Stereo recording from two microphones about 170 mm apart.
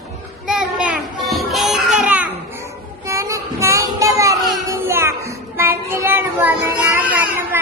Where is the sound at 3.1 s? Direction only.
20° right (ahead or behind).